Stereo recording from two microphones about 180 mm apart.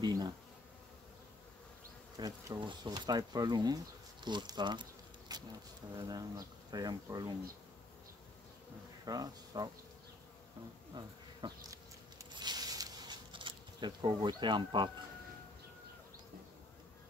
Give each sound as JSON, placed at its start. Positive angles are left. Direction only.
{"t": 0.0, "sound": "bee", "side_deg": -20}
{"t": 2.1, "sound": "speech", "side_deg": -20}
{"t": 9.0, "sound": "speech", "side_deg": -20}
{"t": 11.0, "sound": "bee", "side_deg": -25}
{"t": 12.4, "sound": "insect", "side_deg": -20}